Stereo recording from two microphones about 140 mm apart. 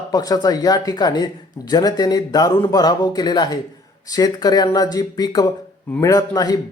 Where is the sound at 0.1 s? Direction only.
25° left (ahead or behind).